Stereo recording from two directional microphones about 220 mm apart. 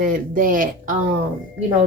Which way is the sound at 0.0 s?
40° right (ahead or behind).